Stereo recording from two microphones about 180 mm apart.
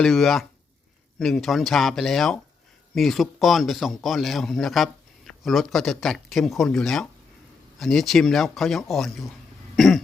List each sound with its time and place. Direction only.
0.0 s a man's voice: centre (ahead or behind)
9.7 s cough: centre (ahead or behind)